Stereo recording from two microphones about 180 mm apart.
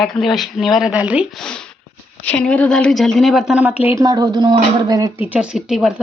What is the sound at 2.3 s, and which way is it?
A woman's voice, 5° left (ahead or behind).